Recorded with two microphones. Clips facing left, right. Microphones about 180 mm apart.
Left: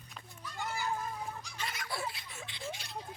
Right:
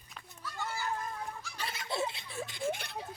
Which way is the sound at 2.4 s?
45° right (ahead or behind).